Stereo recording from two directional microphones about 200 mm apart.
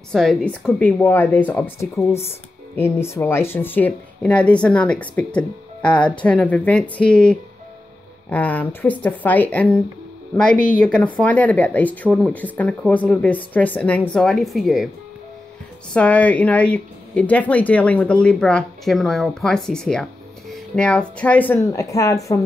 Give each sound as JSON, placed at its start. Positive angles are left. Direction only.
{"t": 0.1, "sound": "a woman's voice", "side_deg": 0}
{"t": 15.9, "sound": "speech", "side_deg": 5}